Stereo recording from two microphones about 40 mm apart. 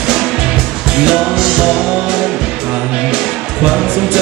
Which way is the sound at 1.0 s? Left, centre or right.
Centre.